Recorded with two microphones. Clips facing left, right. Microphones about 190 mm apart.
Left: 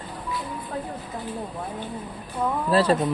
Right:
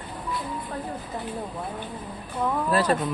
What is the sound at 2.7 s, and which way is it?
Speech, 30° left (ahead or behind).